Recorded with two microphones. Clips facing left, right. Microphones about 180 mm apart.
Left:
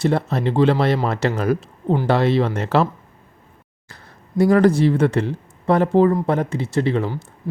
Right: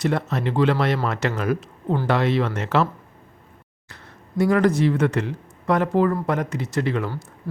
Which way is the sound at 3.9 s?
35° left (ahead or behind).